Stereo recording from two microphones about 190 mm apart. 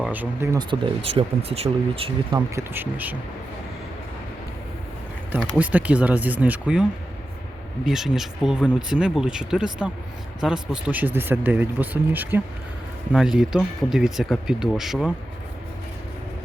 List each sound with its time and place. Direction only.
0.0 s speech: 10° right (ahead or behind)
0.7 s speech: 30° right (ahead or behind)
2.6 s speech: 10° right (ahead or behind)
5.4 s speech: 10° right (ahead or behind)
7.9 s speech: centre (ahead or behind)